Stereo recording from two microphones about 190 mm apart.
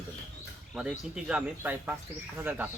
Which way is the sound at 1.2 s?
5° right (ahead or behind).